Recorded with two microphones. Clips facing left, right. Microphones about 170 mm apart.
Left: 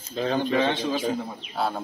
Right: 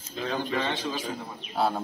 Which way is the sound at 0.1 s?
35° left (ahead or behind).